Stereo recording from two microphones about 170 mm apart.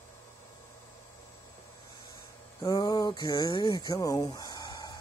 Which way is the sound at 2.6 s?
20° left (ahead or behind).